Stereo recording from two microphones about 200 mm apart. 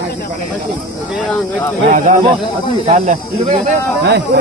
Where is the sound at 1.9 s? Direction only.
40° right (ahead or behind).